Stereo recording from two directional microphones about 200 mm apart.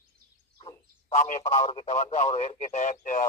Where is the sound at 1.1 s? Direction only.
40° left (ahead or behind).